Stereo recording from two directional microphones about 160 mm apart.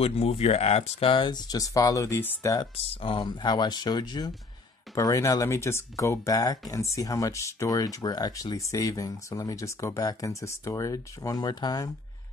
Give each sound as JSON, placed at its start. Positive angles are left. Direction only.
{"t": 0.0, "sound": "speech", "side_deg": 40}
{"t": 2.7, "sound": "speech", "side_deg": 40}